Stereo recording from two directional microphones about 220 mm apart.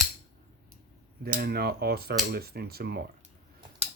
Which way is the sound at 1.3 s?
45° right (ahead or behind).